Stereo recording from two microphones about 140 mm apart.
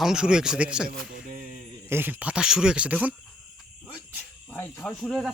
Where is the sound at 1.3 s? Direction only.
75° right (ahead or behind).